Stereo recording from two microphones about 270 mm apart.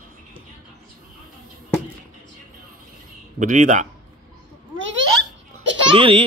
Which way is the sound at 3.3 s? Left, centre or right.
Right.